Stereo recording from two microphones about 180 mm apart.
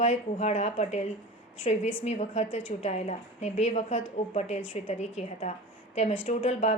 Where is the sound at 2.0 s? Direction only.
40° left (ahead or behind).